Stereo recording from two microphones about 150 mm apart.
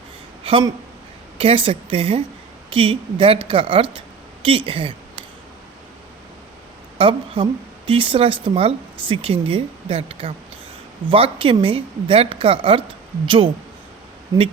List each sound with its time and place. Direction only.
0.4 s a sound: 35° right (ahead or behind)
1.4 s a woman's voice: 40° right (ahead or behind)
7.0 s a woman's voice: 35° right (ahead or behind)